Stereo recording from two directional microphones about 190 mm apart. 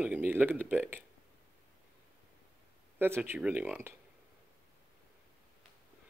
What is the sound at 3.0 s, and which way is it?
Speech, 10° right (ahead or behind).